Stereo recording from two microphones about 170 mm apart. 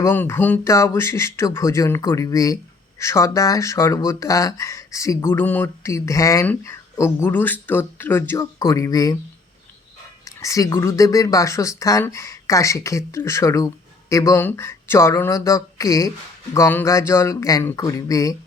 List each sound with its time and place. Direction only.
0.0 s speech: 15° left (ahead or behind)
10.2 s speech: 20° left (ahead or behind)